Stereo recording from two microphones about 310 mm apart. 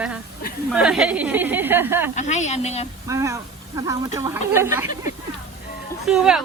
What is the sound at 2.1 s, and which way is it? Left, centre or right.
Speech, left.